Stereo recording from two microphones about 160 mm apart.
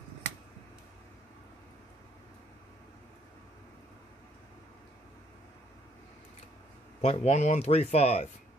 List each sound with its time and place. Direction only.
7.0 s speech: 40° left (ahead or behind)